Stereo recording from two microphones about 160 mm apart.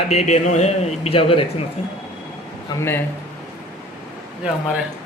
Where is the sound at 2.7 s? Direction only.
15° left (ahead or behind).